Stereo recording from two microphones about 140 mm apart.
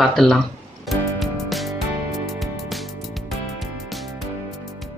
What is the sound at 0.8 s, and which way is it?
Music, centre (ahead or behind).